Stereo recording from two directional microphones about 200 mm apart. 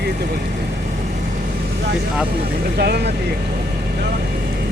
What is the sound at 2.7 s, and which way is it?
Speech, 50° right (ahead or behind).